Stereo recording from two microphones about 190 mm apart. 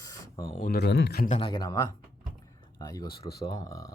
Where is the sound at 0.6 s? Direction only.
60° left (ahead or behind).